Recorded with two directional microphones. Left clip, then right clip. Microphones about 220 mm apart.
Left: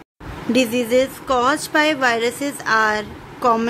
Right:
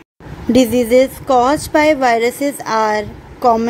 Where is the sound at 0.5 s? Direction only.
20° right (ahead or behind).